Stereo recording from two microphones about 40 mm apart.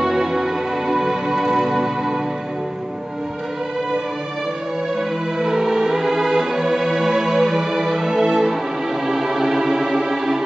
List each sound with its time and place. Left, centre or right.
0.0 s music: centre
5.4 s music: centre